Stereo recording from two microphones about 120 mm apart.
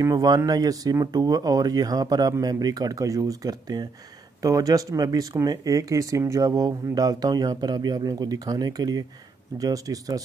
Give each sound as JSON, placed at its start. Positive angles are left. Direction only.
{"t": 0.0, "sound": "speech", "side_deg": -30}